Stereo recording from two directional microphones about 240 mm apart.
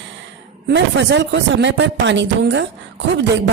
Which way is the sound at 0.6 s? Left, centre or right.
Right.